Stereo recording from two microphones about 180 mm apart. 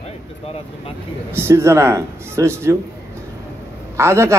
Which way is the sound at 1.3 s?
15° right (ahead or behind).